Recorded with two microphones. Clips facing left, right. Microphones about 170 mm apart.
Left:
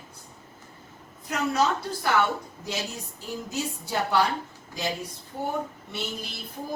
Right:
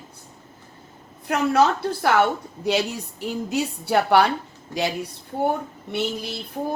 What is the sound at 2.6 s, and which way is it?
A woman's voice, 70° right (ahead or behind).